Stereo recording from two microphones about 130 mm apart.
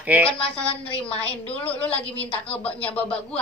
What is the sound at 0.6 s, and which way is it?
Speech, 10° left (ahead or behind).